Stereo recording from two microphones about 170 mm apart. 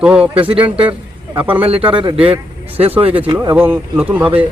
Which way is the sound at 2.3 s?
35° right (ahead or behind).